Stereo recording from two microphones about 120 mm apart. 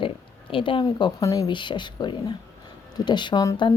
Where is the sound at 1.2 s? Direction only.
25° left (ahead or behind).